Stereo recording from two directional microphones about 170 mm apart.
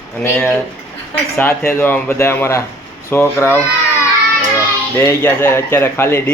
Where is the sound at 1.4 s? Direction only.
10° left (ahead or behind).